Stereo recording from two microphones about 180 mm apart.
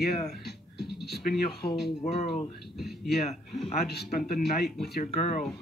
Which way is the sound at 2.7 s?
Centre (ahead or behind).